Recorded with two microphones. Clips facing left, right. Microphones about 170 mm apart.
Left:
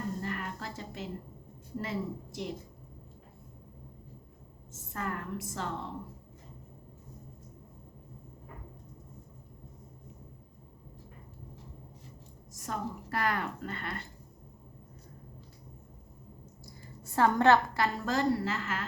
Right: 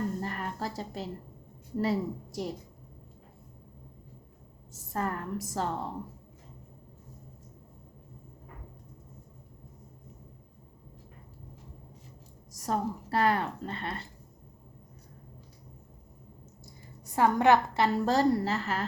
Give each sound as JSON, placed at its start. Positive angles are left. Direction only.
{"t": 0.2, "sound": "a sound", "side_deg": -40}
{"t": 1.8, "sound": "a woman's voice", "side_deg": -40}
{"t": 4.7, "sound": "a woman's voice", "side_deg": -35}
{"t": 12.5, "sound": "a woman's voice", "side_deg": -35}
{"t": 16.6, "sound": "a sound", "side_deg": -15}
{"t": 17.7, "sound": "a woman's voice", "side_deg": -30}